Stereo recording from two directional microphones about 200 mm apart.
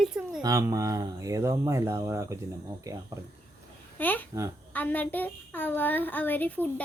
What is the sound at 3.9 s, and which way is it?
A child's voice, 10° left (ahead or behind).